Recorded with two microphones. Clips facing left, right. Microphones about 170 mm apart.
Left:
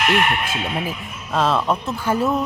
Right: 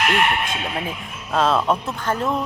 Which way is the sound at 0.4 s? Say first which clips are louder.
Left 2 dB; centre (ahead or behind).